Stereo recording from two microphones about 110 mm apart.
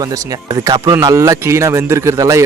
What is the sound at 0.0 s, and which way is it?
A man's voice, 30° right (ahead or behind).